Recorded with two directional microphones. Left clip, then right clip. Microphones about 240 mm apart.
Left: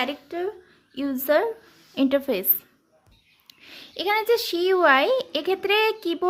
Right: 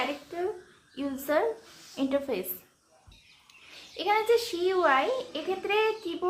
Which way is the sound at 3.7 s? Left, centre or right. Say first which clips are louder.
Left 3 dB; left.